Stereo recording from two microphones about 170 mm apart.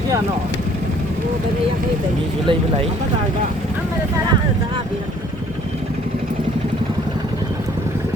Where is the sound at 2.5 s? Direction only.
30° right (ahead or behind).